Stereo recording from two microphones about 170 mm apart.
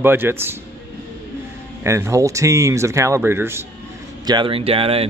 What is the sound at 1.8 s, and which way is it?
Speech, 15° right (ahead or behind).